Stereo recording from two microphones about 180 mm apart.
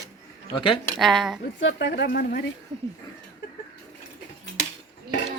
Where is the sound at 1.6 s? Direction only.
75° left (ahead or behind).